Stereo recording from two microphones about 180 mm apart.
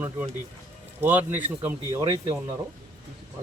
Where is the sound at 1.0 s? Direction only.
10° right (ahead or behind).